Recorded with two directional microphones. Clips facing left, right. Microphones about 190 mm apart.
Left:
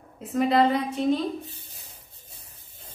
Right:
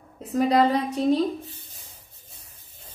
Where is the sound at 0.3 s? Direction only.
40° right (ahead or behind).